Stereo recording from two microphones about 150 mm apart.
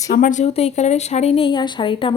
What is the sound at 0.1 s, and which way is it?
Speech, 60° left (ahead or behind).